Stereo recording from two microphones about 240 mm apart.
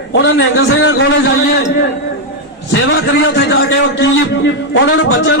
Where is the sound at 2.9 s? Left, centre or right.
Left.